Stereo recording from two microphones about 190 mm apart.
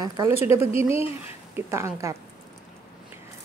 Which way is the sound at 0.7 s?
30° left (ahead or behind).